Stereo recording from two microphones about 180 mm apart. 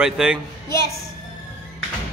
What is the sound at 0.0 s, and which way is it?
Speech, 5° right (ahead or behind).